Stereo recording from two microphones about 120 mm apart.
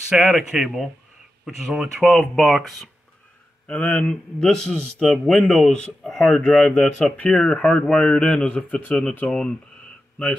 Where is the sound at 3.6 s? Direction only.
10° left (ahead or behind).